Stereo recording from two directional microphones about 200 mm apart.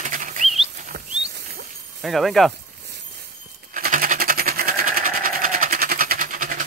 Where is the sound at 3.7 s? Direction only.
45° right (ahead or behind).